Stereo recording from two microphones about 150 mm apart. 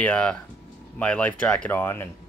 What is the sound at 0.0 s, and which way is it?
Speech, 5° left (ahead or behind).